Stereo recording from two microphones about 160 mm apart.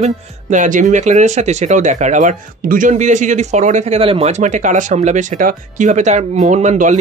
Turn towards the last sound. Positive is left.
turn(degrees=-50)  # may be behind; listen again after turning